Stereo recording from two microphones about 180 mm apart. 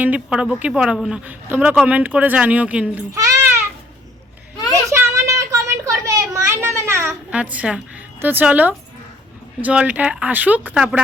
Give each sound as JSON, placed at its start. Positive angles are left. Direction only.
{"t": 0.0, "sound": "speech", "side_deg": -5}
{"t": 3.2, "sound": "goat", "side_deg": -15}
{"t": 4.7, "sound": "a sound", "side_deg": -15}
{"t": 8.2, "sound": "speech", "side_deg": -10}